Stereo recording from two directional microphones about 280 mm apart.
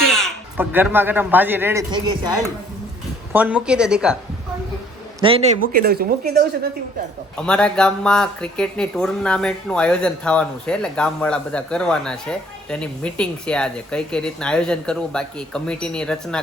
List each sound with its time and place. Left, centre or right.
0.1 s speech: centre
3.3 s speech: centre
5.2 s speech: right
7.3 s speech: centre